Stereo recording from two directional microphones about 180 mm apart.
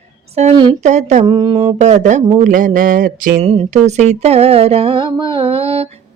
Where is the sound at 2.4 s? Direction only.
45° right (ahead or behind).